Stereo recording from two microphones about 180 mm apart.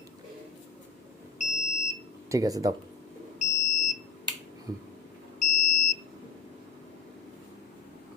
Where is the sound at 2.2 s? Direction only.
20° right (ahead or behind).